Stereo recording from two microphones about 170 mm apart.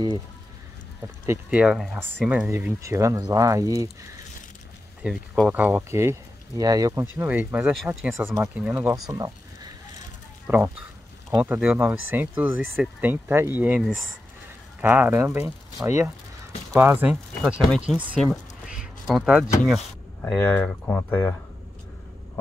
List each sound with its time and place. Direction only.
1.2 s speech: 10° right (ahead or behind)
5.0 s speech: 5° right (ahead or behind); by 9.3 s 20° right (ahead or behind)
10.4 s speech: 10° right (ahead or behind)
17.4 s speech: centre (ahead or behind)
18.1 s quack: centre (ahead or behind)
19.6 s speech: centre (ahead or behind)